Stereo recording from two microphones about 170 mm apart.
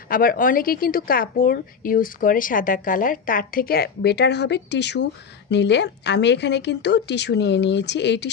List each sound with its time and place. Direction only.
0.1 s a woman's voice: 55° left (ahead or behind); by 8.3 s 90° left